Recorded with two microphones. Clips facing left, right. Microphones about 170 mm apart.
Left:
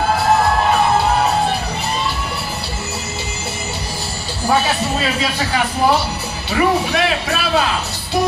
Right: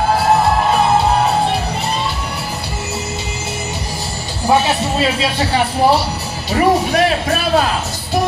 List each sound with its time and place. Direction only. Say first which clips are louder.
4.5 s speech: right 3 dB; 25° right (ahead or behind)
6.5 s speech: right 3 dB; 40° right (ahead or behind)